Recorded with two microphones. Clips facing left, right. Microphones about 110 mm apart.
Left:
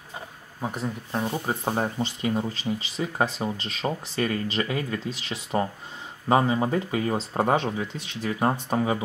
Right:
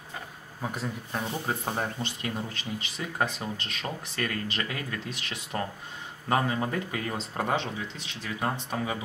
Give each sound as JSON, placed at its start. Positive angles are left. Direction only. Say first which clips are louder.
{"t": 0.8, "sound": "speech", "louder": "left 4 dB", "side_deg": 25}
{"t": 5.1, "sound": "speech", "louder": "left 6 dB", "side_deg": 35}
{"t": 6.2, "sound": "speech", "louder": "left 5 dB", "side_deg": 20}
{"t": 7.2, "sound": "speech", "louder": "left 5 dB", "side_deg": 35}